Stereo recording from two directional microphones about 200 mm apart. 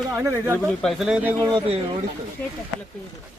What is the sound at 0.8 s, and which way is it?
Speech, centre (ahead or behind).